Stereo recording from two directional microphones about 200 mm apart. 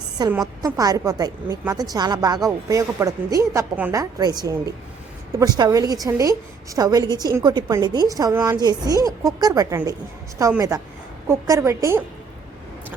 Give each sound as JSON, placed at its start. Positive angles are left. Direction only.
{"t": 0.2, "sound": "a woman's voice", "side_deg": -20}